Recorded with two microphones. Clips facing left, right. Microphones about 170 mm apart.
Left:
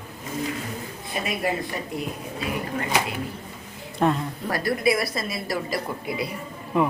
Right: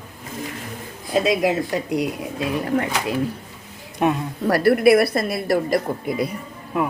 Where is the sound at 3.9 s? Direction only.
15° right (ahead or behind).